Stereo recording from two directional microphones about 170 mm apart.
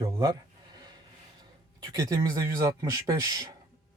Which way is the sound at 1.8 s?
20° right (ahead or behind).